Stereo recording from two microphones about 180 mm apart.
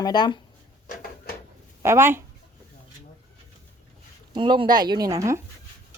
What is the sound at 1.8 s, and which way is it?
Speech, 15° right (ahead or behind).